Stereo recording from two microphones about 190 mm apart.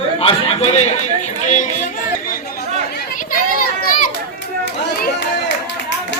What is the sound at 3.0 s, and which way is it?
Children playing, 45° left (ahead or behind).